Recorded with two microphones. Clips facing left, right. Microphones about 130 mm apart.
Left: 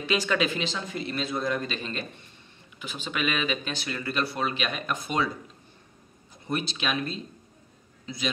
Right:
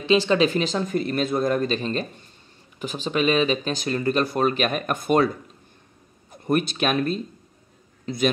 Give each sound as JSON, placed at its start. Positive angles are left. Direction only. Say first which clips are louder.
{"t": 0.0, "sound": "speech", "louder": "right 7 dB", "side_deg": -30}
{"t": 0.5, "sound": "speech", "louder": "right 8 dB", "side_deg": -45}
{"t": 6.3, "sound": "speech", "louder": "right 8 dB", "side_deg": -55}
{"t": 8.0, "sound": "a sound", "louder": "right 11 dB", "side_deg": -55}